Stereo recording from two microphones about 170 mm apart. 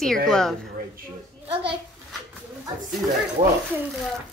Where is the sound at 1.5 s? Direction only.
30° right (ahead or behind).